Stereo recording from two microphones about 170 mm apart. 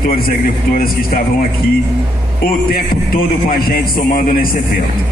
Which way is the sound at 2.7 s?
60° left (ahead or behind).